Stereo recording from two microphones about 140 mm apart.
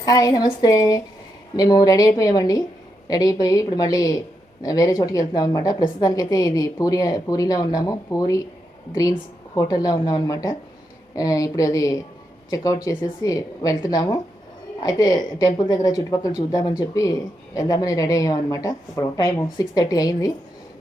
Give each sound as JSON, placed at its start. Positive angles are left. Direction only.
{"t": 0.0, "sound": "a woman's voice", "side_deg": 25}
{"t": 9.6, "sound": "a woman's voice", "side_deg": 25}